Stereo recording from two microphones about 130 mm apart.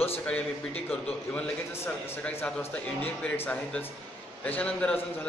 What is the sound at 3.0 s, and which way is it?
A man's voice, 15° left (ahead or behind).